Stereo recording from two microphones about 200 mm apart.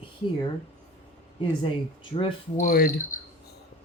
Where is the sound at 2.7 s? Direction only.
45° left (ahead or behind).